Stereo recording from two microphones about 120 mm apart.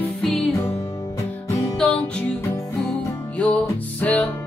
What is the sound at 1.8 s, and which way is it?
Music, 10° left (ahead or behind).